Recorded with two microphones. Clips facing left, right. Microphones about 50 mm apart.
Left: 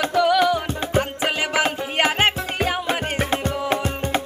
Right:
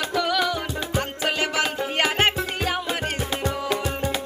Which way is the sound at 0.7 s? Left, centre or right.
Left.